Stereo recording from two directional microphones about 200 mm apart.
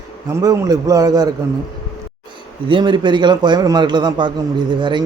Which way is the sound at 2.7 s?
25° right (ahead or behind).